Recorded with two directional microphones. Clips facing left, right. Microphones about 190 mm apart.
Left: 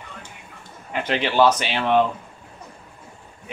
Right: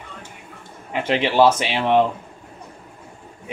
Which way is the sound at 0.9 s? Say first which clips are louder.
Right 3 dB; 25° right (ahead or behind).